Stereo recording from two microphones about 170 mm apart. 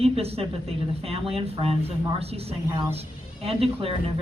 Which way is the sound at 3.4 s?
35° right (ahead or behind).